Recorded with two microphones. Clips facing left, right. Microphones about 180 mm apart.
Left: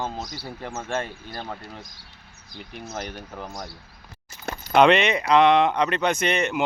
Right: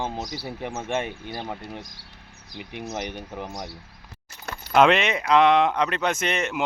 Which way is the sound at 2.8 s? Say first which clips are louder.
Right 2 dB; 15° right (ahead or behind).